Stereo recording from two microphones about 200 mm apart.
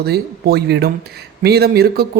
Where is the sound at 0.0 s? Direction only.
55° right (ahead or behind).